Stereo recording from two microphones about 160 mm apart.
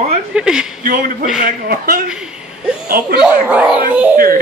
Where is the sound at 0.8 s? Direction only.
60° right (ahead or behind).